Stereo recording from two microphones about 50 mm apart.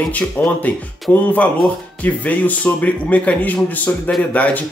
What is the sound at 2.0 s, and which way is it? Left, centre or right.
Speech, left.